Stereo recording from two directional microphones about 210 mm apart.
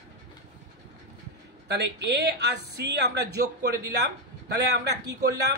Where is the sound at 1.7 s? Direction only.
55° right (ahead or behind).